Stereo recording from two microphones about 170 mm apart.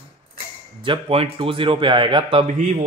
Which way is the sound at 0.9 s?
35° right (ahead or behind).